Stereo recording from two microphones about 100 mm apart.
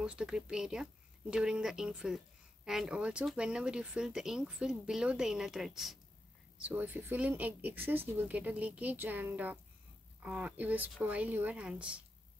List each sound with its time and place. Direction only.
0.0 s speech: 10° right (ahead or behind)
6.6 s speech: 20° right (ahead or behind)